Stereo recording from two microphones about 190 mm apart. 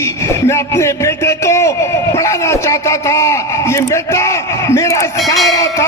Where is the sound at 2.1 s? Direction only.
15° left (ahead or behind).